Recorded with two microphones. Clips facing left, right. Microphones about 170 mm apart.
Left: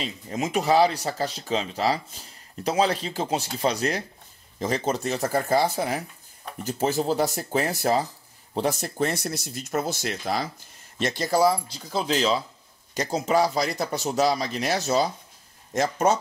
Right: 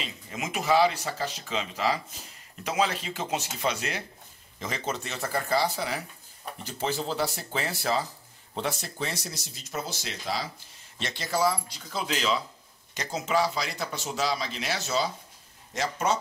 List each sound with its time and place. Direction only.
0.0 s speech: 35° left (ahead or behind)